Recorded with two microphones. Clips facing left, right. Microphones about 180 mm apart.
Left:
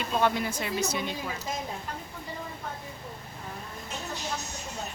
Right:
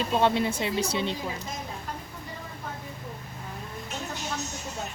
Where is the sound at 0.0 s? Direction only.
25° right (ahead or behind).